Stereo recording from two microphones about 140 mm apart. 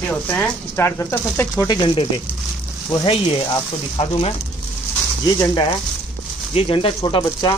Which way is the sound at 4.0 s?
50° left (ahead or behind).